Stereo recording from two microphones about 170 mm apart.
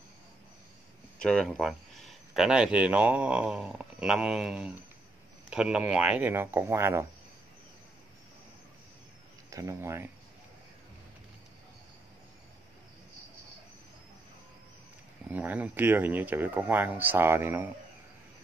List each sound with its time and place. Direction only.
1.2 s speech: 5° left (ahead or behind); by 7.1 s 15° right (ahead or behind)
9.5 s speech: 20° right (ahead or behind)
15.2 s speech: 10° right (ahead or behind)